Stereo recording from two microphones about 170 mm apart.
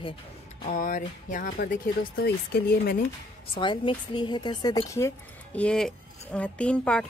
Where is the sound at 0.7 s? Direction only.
50° left (ahead or behind); by 3.1 s 70° left (ahead or behind).